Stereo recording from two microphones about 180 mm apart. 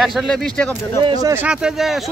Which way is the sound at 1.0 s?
20° right (ahead or behind).